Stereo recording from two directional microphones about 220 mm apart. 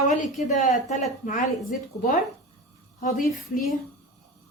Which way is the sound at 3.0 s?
35° left (ahead or behind).